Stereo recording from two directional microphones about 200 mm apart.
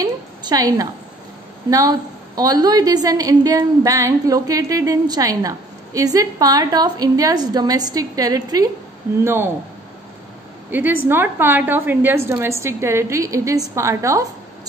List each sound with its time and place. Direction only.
0.0 s a sound: 20° right (ahead or behind)
1.7 s a woman's voice: 20° right (ahead or behind)
10.7 s a woman's voice: 10° right (ahead or behind)